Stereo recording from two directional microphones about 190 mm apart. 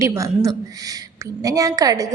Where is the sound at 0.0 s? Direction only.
15° right (ahead or behind).